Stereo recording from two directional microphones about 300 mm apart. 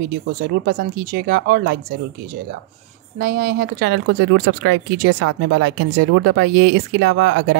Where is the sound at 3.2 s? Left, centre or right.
Right.